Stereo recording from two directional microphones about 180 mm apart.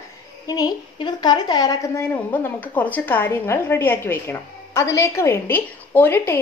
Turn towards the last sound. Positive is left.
turn(degrees=10)  # may be behind; listen again after turning